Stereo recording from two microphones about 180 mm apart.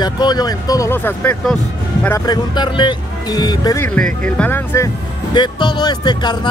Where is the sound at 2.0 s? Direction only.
20° left (ahead or behind).